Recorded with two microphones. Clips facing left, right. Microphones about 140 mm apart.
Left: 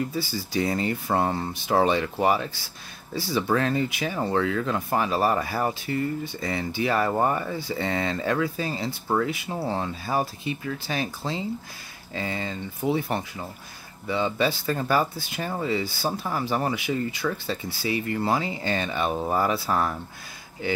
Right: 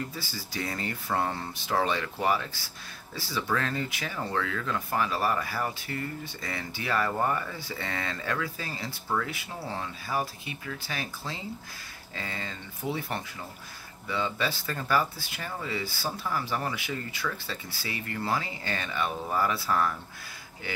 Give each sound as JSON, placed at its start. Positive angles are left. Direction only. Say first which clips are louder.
{"t": 0.1, "sound": "speech", "louder": "left 10 dB", "side_deg": 15}